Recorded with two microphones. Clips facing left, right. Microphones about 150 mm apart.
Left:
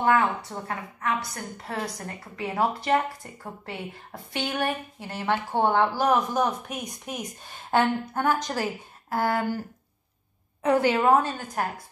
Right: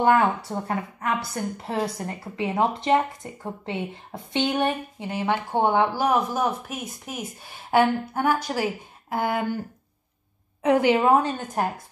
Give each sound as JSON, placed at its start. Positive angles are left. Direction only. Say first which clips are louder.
{"t": 0.0, "sound": "a woman's voice", "louder": "right 3 dB", "side_deg": -30}
{"t": 10.6, "sound": "speech", "louder": "right 2 dB", "side_deg": -15}